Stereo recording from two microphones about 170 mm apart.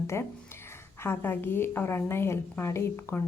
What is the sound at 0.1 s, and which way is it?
A woman's voice, 15° left (ahead or behind).